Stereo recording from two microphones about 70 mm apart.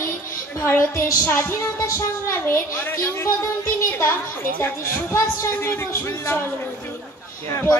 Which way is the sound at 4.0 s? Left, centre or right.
Left.